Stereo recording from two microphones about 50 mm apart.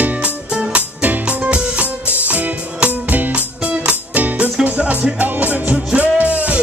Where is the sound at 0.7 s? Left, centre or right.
Right.